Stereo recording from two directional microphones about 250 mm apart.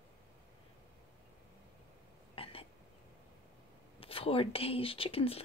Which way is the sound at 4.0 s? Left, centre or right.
Left.